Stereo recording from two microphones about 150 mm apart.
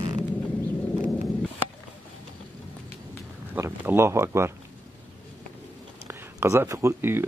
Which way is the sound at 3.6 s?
15° right (ahead or behind).